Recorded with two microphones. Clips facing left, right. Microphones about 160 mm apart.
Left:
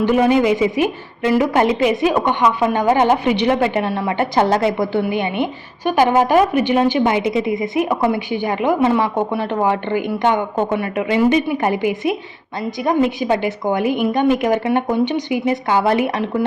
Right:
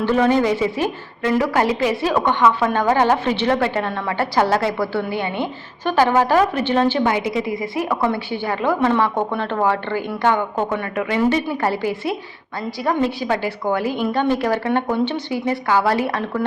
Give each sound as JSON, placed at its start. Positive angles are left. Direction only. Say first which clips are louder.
{"t": 0.0, "sound": "a woman's voice", "louder": "left 2 dB", "side_deg": 15}